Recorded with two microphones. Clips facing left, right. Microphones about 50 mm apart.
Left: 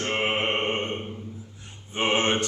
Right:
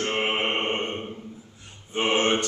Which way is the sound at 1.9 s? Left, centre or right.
Centre.